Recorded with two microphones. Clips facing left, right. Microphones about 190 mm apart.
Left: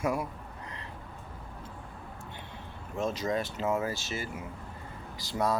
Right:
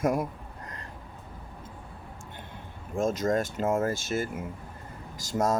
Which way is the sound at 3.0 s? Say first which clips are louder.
Right 5 dB; 45° right (ahead or behind).